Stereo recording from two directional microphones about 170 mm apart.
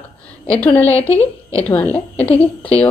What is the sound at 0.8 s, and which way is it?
Speech, 35° left (ahead or behind).